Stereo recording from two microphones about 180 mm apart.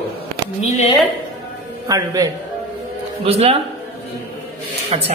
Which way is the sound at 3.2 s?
30° right (ahead or behind).